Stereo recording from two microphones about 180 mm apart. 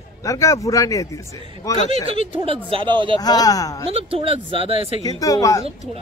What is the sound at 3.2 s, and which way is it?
Speech, 20° left (ahead or behind).